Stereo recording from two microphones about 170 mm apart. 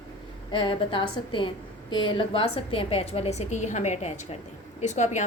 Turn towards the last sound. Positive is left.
turn(degrees=45)  # may be behind; listen again after turning